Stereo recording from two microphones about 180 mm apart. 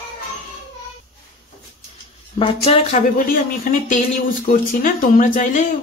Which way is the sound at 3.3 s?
50° left (ahead or behind).